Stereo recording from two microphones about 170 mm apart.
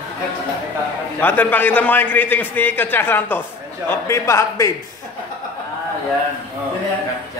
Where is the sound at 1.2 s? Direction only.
10° left (ahead or behind).